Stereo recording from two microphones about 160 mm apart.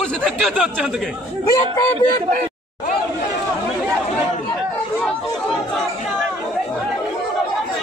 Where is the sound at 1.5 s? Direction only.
25° left (ahead or behind).